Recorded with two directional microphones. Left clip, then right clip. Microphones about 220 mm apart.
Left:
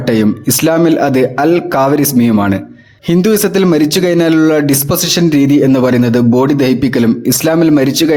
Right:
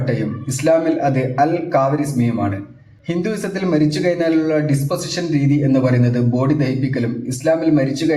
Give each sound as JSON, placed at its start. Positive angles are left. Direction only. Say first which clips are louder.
{"t": 0.1, "sound": "a man's voice", "louder": "left 13 dB", "side_deg": 50}